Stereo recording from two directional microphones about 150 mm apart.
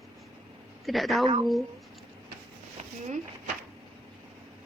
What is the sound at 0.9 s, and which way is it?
Speech, centre (ahead or behind).